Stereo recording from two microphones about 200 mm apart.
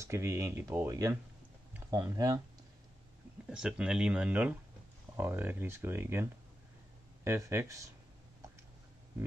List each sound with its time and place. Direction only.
0.0 s speech: 15° right (ahead or behind)
3.4 s speech: 5° right (ahead or behind)
7.2 s speech: 15° right (ahead or behind)